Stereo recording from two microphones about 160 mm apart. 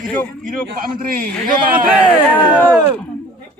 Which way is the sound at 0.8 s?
60° right (ahead or behind).